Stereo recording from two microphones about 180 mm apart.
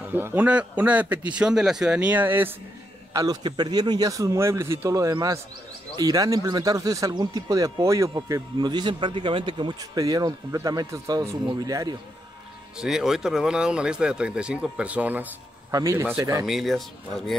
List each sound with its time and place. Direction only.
0.1 s speech: 10° right (ahead or behind)
12.7 s speech: 5° right (ahead or behind)
16.4 s speech: centre (ahead or behind)